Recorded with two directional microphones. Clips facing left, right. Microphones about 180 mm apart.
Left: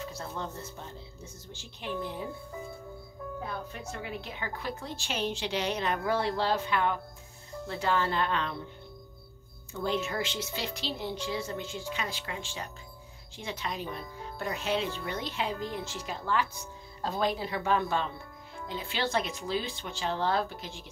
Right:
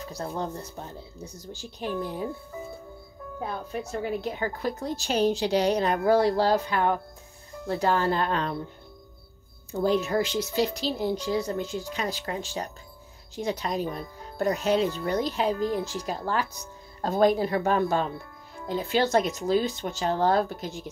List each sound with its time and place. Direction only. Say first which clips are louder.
0.0 s speech: right 5 dB; 40° right (ahead or behind)
3.9 s speech: right 10 dB; 40° right (ahead or behind)
9.7 s speech: right 7 dB; 40° right (ahead or behind)